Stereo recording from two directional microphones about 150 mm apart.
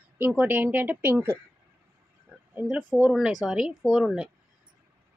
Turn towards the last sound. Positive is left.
turn(degrees=-5)  # may be behind; listen again after turning